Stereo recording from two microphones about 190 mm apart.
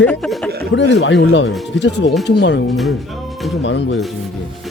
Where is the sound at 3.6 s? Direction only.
75° left (ahead or behind).